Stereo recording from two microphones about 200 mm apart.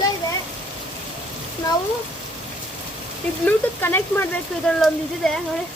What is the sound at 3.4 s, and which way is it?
Speech, 10° left (ahead or behind).